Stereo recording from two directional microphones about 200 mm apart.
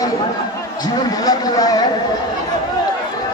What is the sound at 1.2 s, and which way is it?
Speech, 20° left (ahead or behind).